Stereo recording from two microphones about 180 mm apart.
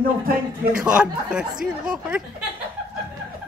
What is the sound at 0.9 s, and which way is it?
Speech, 5° right (ahead or behind).